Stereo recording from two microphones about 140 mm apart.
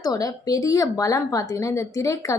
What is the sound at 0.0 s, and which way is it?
A woman's voice, 25° left (ahead or behind).